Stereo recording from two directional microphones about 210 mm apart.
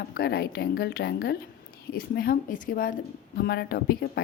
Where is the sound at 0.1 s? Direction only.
50° left (ahead or behind).